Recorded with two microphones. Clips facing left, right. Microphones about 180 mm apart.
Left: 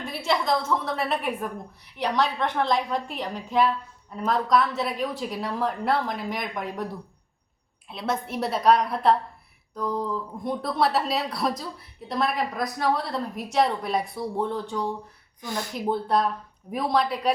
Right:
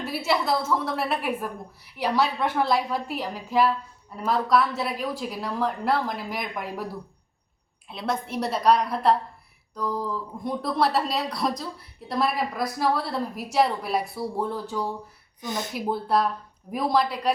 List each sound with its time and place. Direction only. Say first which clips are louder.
0.0 s speech: right 1 dB; 5° right (ahead or behind)
7.9 s speech: even; centre (ahead or behind)
15.4 s speech: right 1 dB; 20° right (ahead or behind)
15.7 s speech: left 1 dB; centre (ahead or behind)